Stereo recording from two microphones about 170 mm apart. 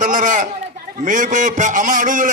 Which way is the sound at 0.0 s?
50° right (ahead or behind).